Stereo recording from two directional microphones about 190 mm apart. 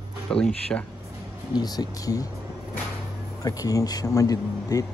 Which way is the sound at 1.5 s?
20° left (ahead or behind).